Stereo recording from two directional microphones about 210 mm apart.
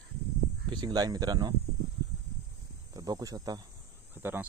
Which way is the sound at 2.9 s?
15° right (ahead or behind).